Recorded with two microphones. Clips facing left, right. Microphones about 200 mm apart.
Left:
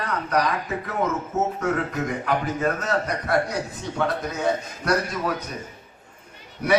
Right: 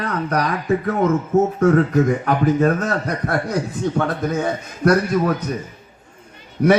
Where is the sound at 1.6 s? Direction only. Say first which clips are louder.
Right 10 dB; 50° right (ahead or behind).